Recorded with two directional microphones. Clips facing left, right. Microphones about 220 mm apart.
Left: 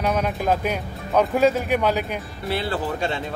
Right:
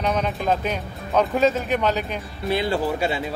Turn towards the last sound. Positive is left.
turn(degrees=-10)  # may be behind; listen again after turning